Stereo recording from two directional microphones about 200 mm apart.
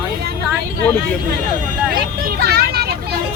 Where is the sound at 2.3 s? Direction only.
50° right (ahead or behind).